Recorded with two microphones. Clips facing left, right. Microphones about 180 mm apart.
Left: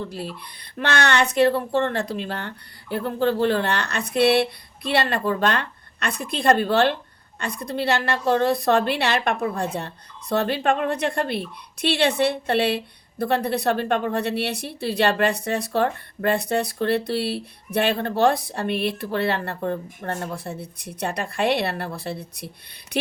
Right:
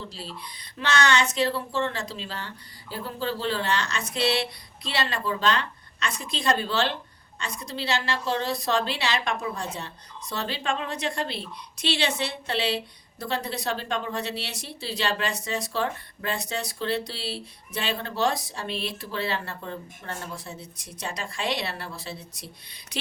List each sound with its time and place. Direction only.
0.1 s a woman's voice: 55° left (ahead or behind)